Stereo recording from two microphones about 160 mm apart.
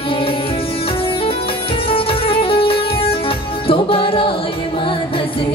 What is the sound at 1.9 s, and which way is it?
Music, 35° left (ahead or behind).